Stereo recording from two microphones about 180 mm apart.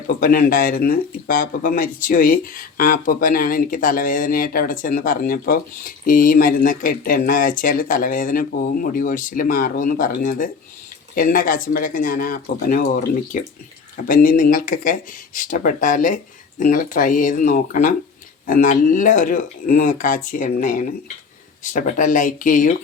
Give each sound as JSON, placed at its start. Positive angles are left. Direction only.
{"t": 0.2, "sound": "speech", "side_deg": 50}